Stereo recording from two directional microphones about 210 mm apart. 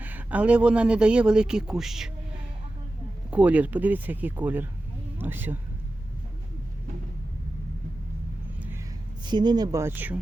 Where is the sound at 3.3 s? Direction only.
5° right (ahead or behind).